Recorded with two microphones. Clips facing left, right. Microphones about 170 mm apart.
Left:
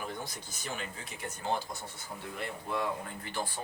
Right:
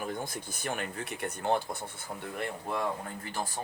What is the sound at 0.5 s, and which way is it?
Speech, 55° right (ahead or behind).